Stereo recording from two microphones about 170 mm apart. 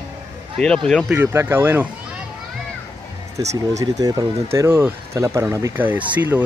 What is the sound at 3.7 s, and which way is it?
Speech, 20° right (ahead or behind).